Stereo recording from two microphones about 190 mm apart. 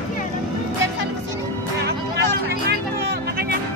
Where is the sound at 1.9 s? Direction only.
60° right (ahead or behind).